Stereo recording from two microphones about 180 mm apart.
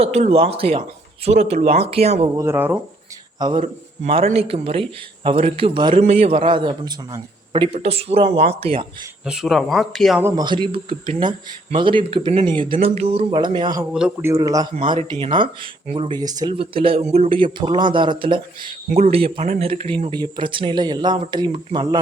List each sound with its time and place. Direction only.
0.0 s a man's voice: 35° right (ahead or behind)
2.3 s speech: 15° right (ahead or behind)
3.3 s a man's voice: 25° right (ahead or behind)
3.6 s a man's voice: 35° right (ahead or behind)
9.2 s speech: 5° right (ahead or behind)
10.2 s speech: 15° right (ahead or behind)
10.4 s speech: 25° right (ahead or behind)
13.9 s speech: 10° right (ahead or behind)